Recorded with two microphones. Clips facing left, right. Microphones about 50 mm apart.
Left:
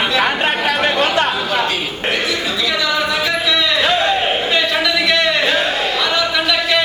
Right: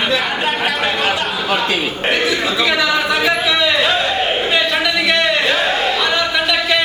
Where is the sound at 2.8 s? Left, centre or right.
Centre.